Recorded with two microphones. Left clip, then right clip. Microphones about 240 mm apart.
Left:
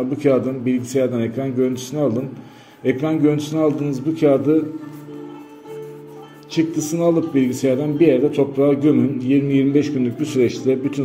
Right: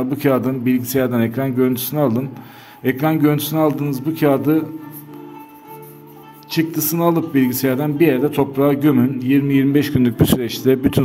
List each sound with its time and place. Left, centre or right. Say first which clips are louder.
0.1 s a man's voice: left 1 dB; right
6.5 s speech: even; right